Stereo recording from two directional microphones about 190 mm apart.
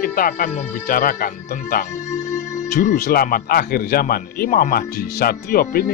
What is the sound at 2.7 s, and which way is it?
Speech, 50° left (ahead or behind).